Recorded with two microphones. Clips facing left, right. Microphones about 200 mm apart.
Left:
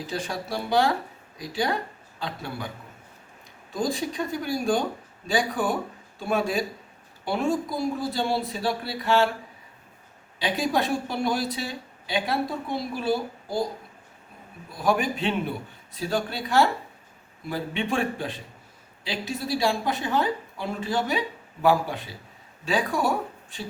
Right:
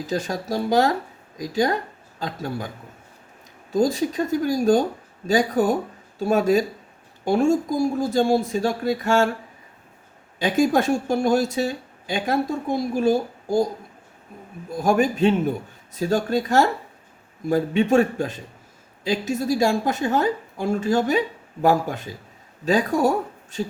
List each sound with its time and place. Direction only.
0.1 s a woman's voice: 40° right (ahead or behind)
10.4 s speech: 45° right (ahead or behind)
14.7 s speech: 45° right (ahead or behind)